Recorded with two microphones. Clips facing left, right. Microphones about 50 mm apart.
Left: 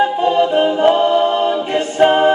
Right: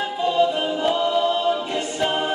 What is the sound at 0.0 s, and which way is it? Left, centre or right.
A capella, left.